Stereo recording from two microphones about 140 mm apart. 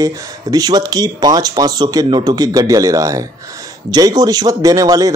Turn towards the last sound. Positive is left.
turn(degrees=-25)  # may be behind; listen again after turning